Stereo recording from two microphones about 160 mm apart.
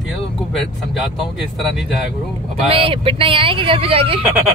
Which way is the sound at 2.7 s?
35° right (ahead or behind).